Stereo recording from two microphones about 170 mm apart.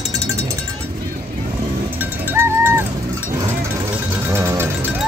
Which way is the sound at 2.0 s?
15° right (ahead or behind).